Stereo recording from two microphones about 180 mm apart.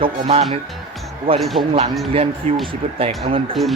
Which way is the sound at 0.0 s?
35° right (ahead or behind).